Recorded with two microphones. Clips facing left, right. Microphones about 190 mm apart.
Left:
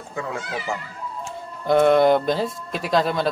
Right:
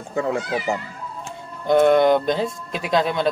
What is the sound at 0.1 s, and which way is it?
Speech, 40° right (ahead or behind).